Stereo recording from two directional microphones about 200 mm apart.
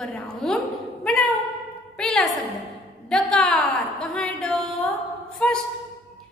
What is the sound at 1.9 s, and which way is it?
Music, 5° left (ahead or behind).